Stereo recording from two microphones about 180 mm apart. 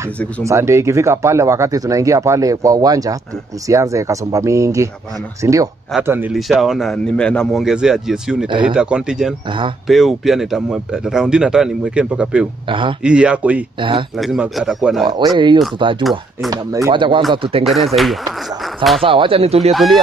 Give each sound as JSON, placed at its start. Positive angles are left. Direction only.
{"t": 0.4, "sound": "a man's voice", "side_deg": -15}
{"t": 12.6, "sound": "speech", "side_deg": -25}
{"t": 13.0, "sound": "a man's voice", "side_deg": -5}
{"t": 13.7, "sound": "speech", "side_deg": -25}
{"t": 14.1, "sound": "a man's voice", "side_deg": 0}
{"t": 15.0, "sound": "speech", "side_deg": -25}
{"t": 17.6, "sound": "a man's voice", "side_deg": 0}
{"t": 19.0, "sound": "speech", "side_deg": -30}
{"t": 19.7, "sound": "a man's voice", "side_deg": 0}